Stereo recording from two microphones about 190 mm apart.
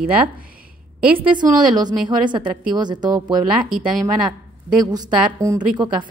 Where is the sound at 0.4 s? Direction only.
50° right (ahead or behind).